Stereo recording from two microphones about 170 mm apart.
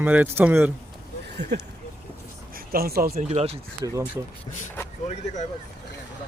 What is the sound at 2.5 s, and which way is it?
Speech, 60° right (ahead or behind).